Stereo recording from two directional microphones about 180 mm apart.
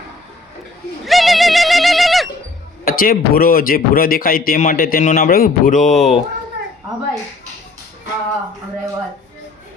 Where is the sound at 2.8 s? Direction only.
55° left (ahead or behind).